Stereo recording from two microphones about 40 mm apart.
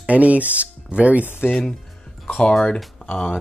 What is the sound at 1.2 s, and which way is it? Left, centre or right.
Speech, left.